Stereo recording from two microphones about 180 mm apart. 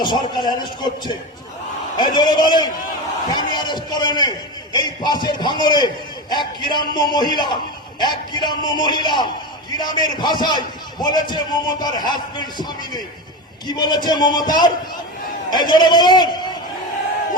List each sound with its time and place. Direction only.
0.0 s a man's voice: 25° left (ahead or behind)